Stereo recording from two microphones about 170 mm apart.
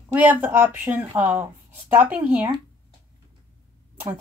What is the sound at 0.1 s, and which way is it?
Speech, 10° right (ahead or behind).